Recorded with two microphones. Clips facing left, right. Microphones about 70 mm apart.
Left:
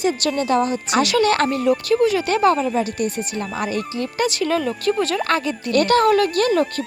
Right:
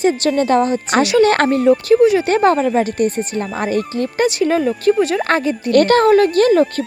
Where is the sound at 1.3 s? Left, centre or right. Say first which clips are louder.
Right 4 dB; right.